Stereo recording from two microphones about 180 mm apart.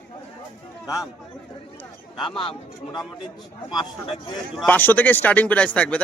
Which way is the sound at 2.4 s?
30° left (ahead or behind).